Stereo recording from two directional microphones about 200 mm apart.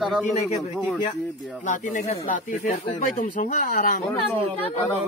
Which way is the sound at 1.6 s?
40° left (ahead or behind).